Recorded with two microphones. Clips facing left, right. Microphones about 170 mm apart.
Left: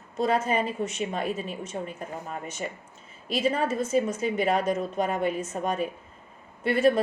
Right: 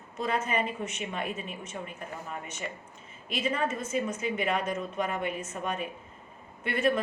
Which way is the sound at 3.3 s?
35° left (ahead or behind).